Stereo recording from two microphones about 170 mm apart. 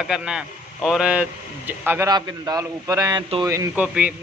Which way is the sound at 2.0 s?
25° right (ahead or behind).